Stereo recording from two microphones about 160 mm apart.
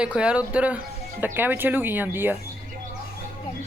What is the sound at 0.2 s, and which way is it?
Speech, 5° right (ahead or behind).